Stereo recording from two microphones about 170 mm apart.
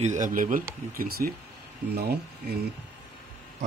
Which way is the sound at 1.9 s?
70° right (ahead or behind).